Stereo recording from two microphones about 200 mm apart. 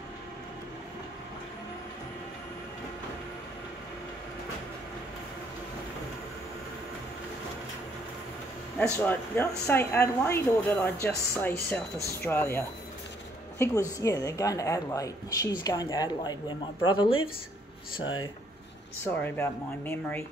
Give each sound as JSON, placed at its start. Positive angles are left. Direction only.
{"t": 8.7, "sound": "a woman's voice", "side_deg": 10}
{"t": 19.2, "sound": "a woman's voice", "side_deg": 10}